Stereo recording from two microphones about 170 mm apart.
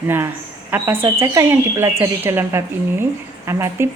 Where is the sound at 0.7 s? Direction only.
15° right (ahead or behind).